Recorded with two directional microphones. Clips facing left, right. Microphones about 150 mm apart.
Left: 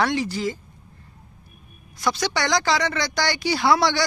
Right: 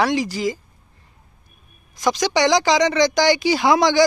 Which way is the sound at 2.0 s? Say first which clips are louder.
Right 6 dB; 15° right (ahead or behind).